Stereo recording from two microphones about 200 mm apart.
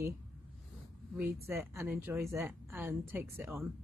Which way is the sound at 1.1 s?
15° right (ahead or behind).